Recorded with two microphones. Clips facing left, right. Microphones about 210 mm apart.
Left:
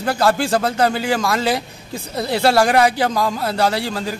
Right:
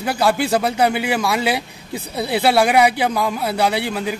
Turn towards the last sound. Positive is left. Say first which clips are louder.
# even
turn(degrees=-10)  # may be behind; listen again after turning